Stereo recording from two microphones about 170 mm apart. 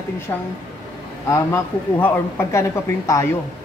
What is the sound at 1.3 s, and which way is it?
Speech, 10° left (ahead or behind).